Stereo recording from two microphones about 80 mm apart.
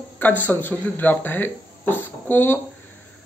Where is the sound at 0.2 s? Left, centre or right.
Left.